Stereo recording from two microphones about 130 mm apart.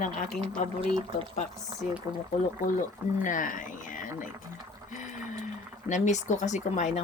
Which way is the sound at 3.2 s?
90° left.